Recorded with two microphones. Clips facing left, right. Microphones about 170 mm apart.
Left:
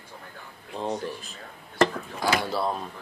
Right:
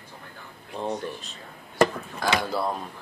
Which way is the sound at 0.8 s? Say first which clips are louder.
Even; centre (ahead or behind).